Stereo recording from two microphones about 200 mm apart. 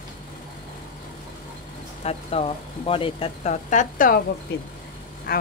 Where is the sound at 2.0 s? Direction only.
30° left (ahead or behind).